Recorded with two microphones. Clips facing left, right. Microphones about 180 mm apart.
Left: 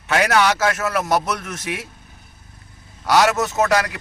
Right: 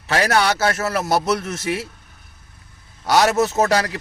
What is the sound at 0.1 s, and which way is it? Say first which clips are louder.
Speech: left 1 dB; 35° right (ahead or behind).